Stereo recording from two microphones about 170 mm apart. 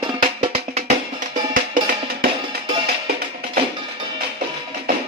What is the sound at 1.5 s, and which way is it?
Music, 55° right (ahead or behind).